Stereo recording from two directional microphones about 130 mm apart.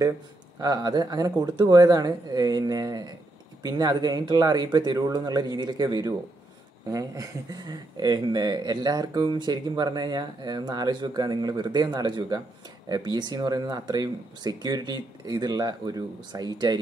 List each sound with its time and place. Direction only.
0.6 s speech: 30° right (ahead or behind)